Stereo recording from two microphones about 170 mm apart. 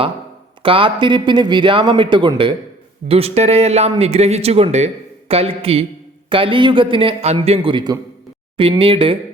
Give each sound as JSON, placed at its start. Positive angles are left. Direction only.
{"t": 0.6, "sound": "speech", "side_deg": -30}